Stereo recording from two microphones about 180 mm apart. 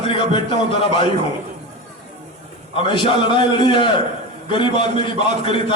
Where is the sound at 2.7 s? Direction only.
25° left (ahead or behind).